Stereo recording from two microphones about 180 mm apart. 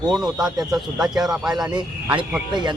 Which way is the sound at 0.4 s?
Centre (ahead or behind).